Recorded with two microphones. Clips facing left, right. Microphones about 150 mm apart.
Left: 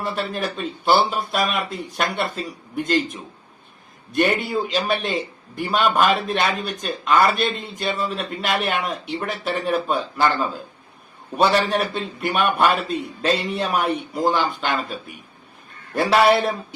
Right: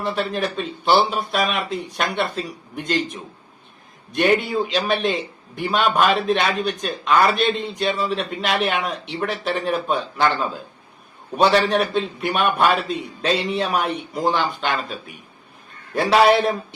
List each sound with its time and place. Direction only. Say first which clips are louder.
0.0 s speech: right 2 dB; centre (ahead or behind)
4.1 s speech: right 2 dB; centre (ahead or behind)